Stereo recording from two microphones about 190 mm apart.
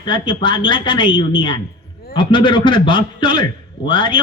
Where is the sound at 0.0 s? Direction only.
25° left (ahead or behind).